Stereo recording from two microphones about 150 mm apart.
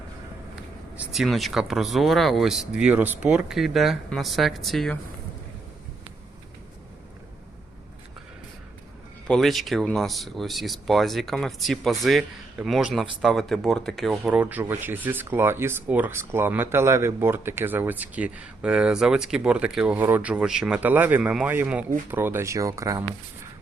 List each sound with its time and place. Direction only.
0.9 s speech: centre (ahead or behind)
9.2 s speech: 5° left (ahead or behind); by 23.0 s 20° right (ahead or behind)